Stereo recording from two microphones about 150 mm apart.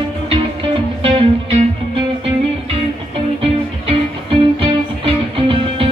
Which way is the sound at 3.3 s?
35° right (ahead or behind).